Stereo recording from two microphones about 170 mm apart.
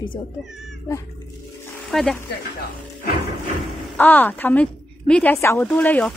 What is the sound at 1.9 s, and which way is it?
Speech, 5° left (ahead or behind).